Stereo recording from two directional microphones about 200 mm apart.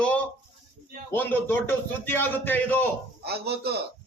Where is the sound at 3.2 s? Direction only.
55° right (ahead or behind).